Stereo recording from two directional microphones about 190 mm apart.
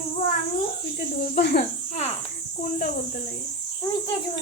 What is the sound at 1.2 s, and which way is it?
Speech, 55° left (ahead or behind).